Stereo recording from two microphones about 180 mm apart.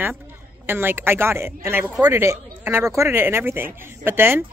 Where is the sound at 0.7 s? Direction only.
10° right (ahead or behind).